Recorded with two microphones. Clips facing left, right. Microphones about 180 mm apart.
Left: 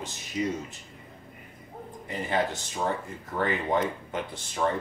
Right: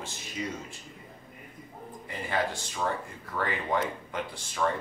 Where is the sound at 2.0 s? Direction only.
20° left (ahead or behind).